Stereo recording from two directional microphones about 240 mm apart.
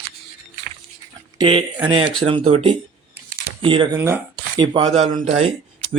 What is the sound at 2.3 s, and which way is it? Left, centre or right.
Speech, right.